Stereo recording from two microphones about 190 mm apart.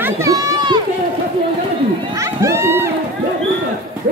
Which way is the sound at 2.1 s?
15° right (ahead or behind).